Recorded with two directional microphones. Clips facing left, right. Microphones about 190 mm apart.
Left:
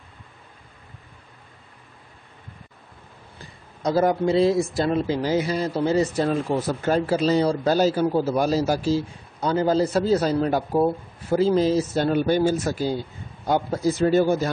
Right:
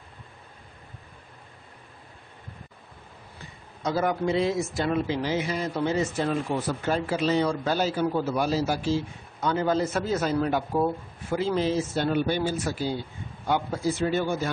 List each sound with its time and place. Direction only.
3.8 s speech: 35° left (ahead or behind)